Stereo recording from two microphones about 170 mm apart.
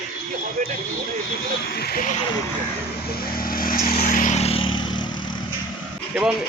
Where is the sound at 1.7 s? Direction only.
65° left (ahead or behind).